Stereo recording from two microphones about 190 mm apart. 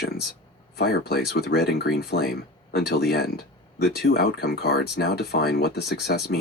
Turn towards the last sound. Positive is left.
turn(degrees=55)  # may be behind; listen again after turning